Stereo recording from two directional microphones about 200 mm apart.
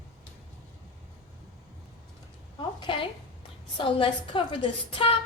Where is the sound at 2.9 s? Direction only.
25° left (ahead or behind).